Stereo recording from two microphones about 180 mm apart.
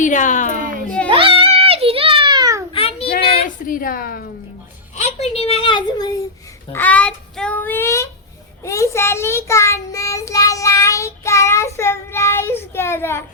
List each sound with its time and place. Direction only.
0.0 s a woman's voice: 45° left (ahead or behind)
1.1 s a sound: 30° right (ahead or behind)
2.7 s child singing: 30° left (ahead or behind)
3.7 s a woman's voice: 50° left (ahead or behind)
4.9 s a woman's voice: 40° left (ahead or behind)
6.7 s child singing: 10° left (ahead or behind)